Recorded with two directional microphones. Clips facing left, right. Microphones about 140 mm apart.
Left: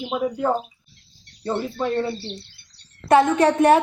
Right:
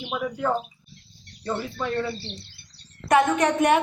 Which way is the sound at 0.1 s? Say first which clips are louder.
Left 3 dB; 30° left (ahead or behind).